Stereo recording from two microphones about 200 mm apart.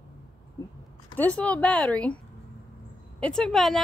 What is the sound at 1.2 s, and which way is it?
A woman's voice, 5° left (ahead or behind).